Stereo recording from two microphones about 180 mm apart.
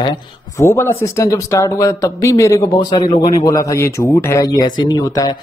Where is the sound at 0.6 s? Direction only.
15° left (ahead or behind).